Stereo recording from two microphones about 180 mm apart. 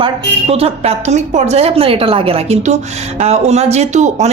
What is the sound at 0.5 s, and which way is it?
Speech, 35° right (ahead or behind).